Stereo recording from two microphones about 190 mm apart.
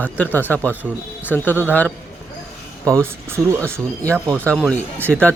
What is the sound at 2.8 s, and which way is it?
Speech, 15° right (ahead or behind).